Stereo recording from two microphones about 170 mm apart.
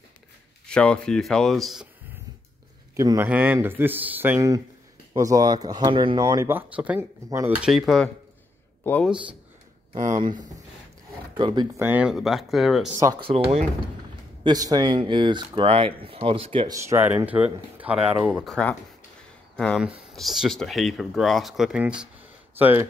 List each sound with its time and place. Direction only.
0.7 s speech: 5° left (ahead or behind)
3.0 s speech: 15° right (ahead or behind)
7.2 s speech: 20° right (ahead or behind)
7.6 s speech: centre (ahead or behind)
11.3 s speech: 25° right (ahead or behind)
11.8 s speech: 10° right (ahead or behind)
12.9 s speech: 20° right (ahead or behind)
13.2 s speech: 35° right (ahead or behind)
14.4 s speech: 25° right (ahead or behind)
16.7 s speech: 15° right (ahead or behind)